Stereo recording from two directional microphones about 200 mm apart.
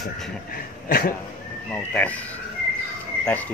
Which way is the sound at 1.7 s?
5° left (ahead or behind).